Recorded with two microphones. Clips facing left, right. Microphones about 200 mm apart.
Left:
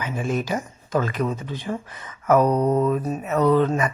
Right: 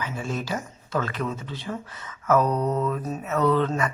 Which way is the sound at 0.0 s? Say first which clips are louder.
Left 5 dB; 15° left (ahead or behind).